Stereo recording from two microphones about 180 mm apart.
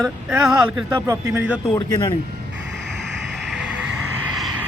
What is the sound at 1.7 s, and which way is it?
Speech, 25° left (ahead or behind).